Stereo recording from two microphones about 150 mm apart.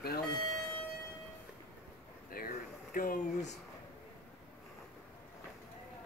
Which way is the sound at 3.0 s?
65° left (ahead or behind).